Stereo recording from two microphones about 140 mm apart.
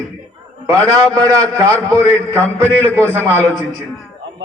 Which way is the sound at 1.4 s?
20° right (ahead or behind).